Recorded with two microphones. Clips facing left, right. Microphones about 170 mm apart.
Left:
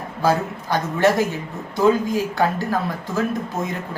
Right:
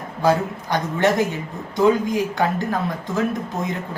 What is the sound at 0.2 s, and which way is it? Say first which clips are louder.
Speech: right 1 dB; 20° right (ahead or behind).